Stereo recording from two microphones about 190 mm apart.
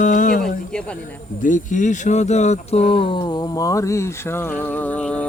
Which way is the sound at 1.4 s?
40° left (ahead or behind).